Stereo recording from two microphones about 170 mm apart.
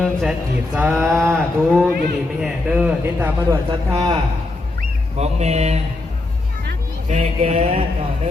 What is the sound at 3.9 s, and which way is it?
Speech, 30° right (ahead or behind).